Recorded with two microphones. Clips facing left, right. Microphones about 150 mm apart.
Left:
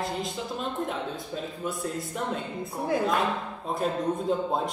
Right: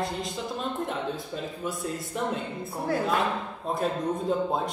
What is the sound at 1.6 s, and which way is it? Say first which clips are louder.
Speech: left 2 dB; centre (ahead or behind).